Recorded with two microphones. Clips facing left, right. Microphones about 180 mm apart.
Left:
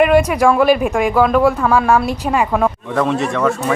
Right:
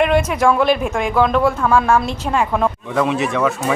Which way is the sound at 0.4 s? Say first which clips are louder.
Left 3 dB; 5° left (ahead or behind).